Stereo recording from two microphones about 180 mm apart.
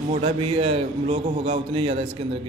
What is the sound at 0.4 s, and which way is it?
A man's voice, 30° right (ahead or behind).